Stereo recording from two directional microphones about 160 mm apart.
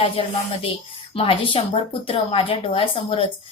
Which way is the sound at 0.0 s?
35° left (ahead or behind).